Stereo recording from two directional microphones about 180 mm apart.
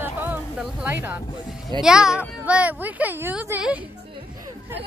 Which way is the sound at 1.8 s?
5° right (ahead or behind).